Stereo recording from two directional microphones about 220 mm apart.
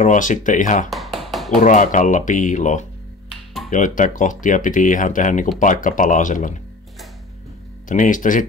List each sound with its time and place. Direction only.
0.0 s speech: 35° left (ahead or behind)
0.8 s tap: centre (ahead or behind)
1.6 s speech: 35° left (ahead or behind)
7.9 s speech: 35° left (ahead or behind)